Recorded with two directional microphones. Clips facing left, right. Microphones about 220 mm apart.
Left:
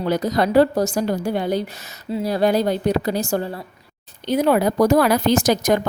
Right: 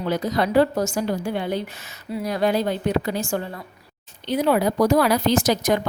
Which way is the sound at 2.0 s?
30° left (ahead or behind).